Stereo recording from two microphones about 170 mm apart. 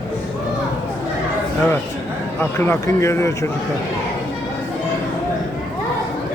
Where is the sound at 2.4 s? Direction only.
15° left (ahead or behind).